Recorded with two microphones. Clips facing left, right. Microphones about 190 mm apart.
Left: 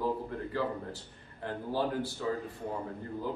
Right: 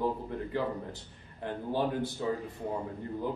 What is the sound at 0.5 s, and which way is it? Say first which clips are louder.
A man's voice: even; 20° right (ahead or behind).